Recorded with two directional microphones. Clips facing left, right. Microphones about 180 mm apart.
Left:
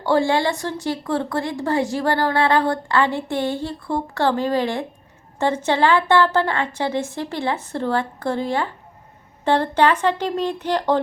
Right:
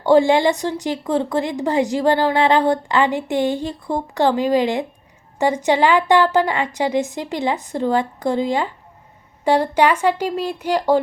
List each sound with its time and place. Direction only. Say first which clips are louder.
0.0 s a woman's voice: right 5 dB; 20° right (ahead or behind)